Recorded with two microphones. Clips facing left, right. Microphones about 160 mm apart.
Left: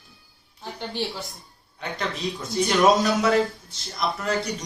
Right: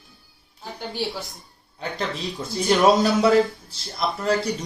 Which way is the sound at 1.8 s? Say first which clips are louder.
Right 1 dB; 30° right (ahead or behind).